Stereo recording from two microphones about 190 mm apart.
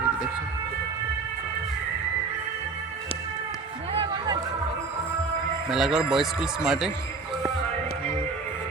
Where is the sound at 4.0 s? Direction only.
20° right (ahead or behind).